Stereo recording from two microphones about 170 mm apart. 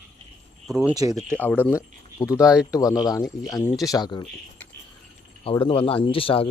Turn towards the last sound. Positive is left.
turn(degrees=30)  # may be behind; listen again after turning